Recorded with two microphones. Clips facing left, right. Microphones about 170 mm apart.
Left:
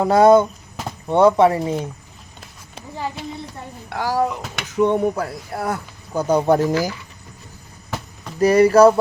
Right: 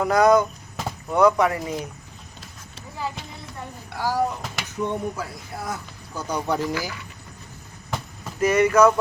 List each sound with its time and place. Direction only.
0.0 s speech: 30° left (ahead or behind)
3.8 s speech: 70° left (ahead or behind); by 6.9 s 45° left (ahead or behind)
8.4 s speech: 35° left (ahead or behind)